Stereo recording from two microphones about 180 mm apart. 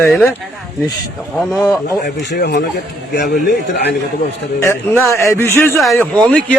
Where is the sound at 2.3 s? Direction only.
65° left (ahead or behind).